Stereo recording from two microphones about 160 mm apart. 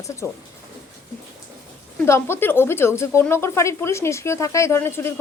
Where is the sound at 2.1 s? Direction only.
15° left (ahead or behind).